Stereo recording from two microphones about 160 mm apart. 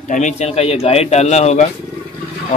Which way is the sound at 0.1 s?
50° left (ahead or behind).